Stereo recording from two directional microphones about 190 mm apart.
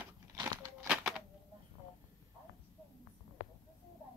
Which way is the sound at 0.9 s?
5° right (ahead or behind).